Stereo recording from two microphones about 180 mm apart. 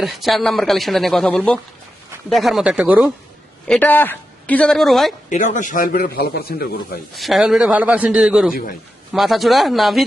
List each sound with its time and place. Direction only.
0.0 s speech: centre (ahead or behind)
3.7 s a woman's voice: 10° left (ahead or behind)
5.3 s a man's voice: 45° left (ahead or behind)
7.2 s speech: centre (ahead or behind)